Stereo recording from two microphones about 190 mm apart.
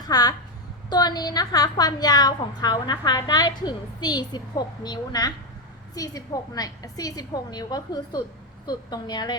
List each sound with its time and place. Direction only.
0.1 s a woman's voice: 20° left (ahead or behind)